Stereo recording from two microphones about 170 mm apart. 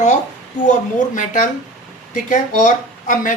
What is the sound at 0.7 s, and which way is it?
Speech, 50° left (ahead or behind).